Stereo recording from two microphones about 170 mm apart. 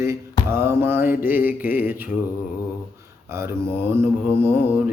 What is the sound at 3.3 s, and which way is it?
Speech, 15° right (ahead or behind).